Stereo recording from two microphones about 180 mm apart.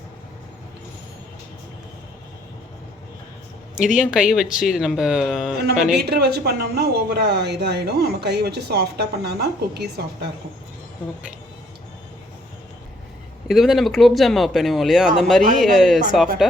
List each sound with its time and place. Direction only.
3.9 s speech: centre (ahead or behind)
6.0 s speech: 65° right (ahead or behind)
13.5 s speech: centre (ahead or behind)